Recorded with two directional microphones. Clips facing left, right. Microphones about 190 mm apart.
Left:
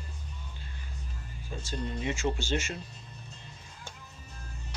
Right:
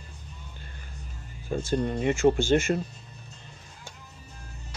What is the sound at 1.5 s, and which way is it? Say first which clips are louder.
Speech: right 10 dB; 55° right (ahead or behind).